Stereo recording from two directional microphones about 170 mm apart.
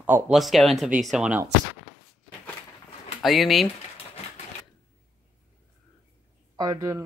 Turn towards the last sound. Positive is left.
turn(degrees=-20)  # may be behind; listen again after turning